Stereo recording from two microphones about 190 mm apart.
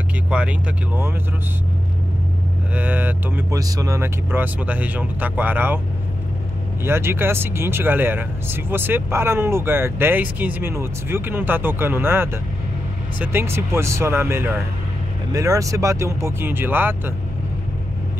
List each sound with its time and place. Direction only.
0.3 s speech: 5° right (ahead or behind)
2.7 s speech: 10° right (ahead or behind)
6.8 s speech: 15° right (ahead or behind)